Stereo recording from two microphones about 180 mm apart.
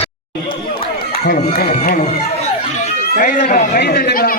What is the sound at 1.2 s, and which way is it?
Speech, 55° left (ahead or behind).